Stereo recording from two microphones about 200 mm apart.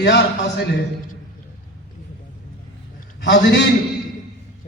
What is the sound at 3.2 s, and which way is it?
Speech, 60° left (ahead or behind).